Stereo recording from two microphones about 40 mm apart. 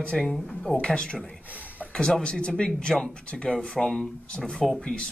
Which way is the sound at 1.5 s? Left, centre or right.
Right.